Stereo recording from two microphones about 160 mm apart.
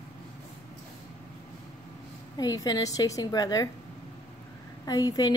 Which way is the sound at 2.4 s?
25° left (ahead or behind).